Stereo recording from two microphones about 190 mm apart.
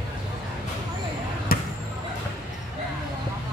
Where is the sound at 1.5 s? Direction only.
50° left (ahead or behind).